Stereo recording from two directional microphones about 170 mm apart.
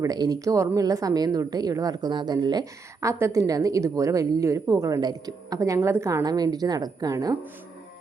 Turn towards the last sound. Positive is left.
turn(degrees=-20)  # may be behind; listen again after turning